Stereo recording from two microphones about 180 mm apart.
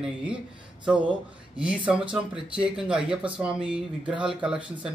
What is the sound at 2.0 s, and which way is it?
Speech, 30° right (ahead or behind).